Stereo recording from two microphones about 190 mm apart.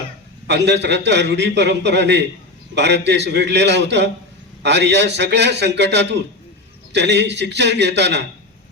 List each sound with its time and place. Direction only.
0.4 s a man's voice: 65° right (ahead or behind)